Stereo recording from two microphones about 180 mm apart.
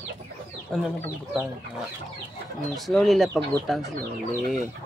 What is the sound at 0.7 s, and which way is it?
Speech, centre (ahead or behind).